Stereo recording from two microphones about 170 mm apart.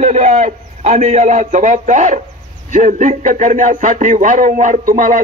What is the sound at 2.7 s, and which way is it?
A man's voice, 45° right (ahead or behind).